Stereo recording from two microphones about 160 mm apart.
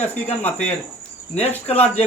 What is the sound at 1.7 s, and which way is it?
Speech, 10° left (ahead or behind).